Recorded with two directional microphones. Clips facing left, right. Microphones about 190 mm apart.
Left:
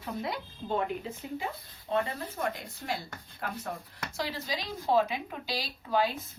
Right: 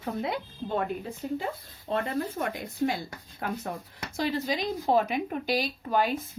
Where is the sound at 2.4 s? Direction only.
55° right (ahead or behind).